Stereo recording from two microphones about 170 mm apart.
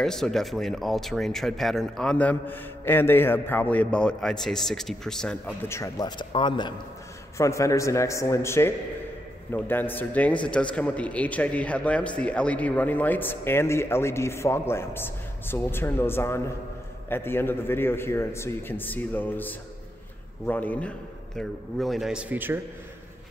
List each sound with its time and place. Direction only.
0.0 s speech: centre (ahead or behind)